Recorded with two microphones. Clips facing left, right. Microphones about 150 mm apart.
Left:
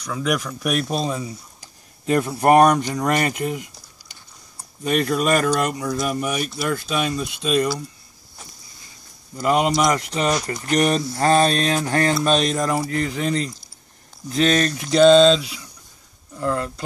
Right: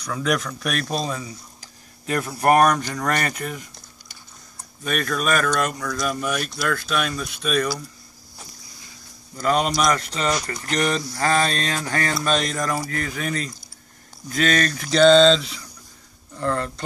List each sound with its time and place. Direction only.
0.0 s speech: 5° left (ahead or behind); by 7.6 s 20° left (ahead or behind)
9.4 s speech: 15° left (ahead or behind)